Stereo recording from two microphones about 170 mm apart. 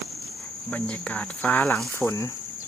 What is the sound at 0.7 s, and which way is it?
Speech, 10° left (ahead or behind).